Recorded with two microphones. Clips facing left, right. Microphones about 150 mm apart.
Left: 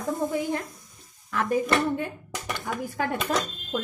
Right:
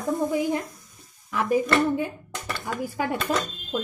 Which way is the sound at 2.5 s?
15° left (ahead or behind).